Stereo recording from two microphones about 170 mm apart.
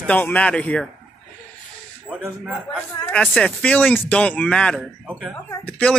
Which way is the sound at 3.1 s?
5° left (ahead or behind).